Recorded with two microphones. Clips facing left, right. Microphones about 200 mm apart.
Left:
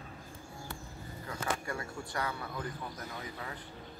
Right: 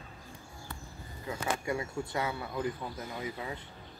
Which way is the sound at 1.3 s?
20° right (ahead or behind).